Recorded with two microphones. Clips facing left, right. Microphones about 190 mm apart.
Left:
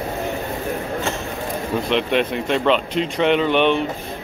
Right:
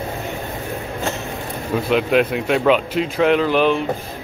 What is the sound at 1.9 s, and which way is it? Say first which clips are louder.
Speech: right 4 dB; 5° right (ahead or behind).